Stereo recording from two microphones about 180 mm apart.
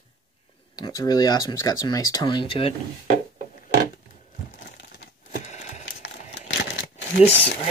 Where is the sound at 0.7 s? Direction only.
20° left (ahead or behind).